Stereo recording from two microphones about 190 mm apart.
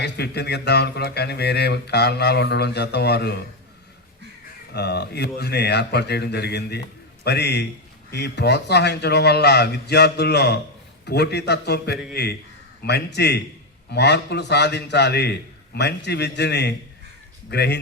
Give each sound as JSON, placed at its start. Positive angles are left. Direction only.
{"t": 0.0, "sound": "mantra", "side_deg": 60}
{"t": 4.7, "sound": "mantra", "side_deg": 60}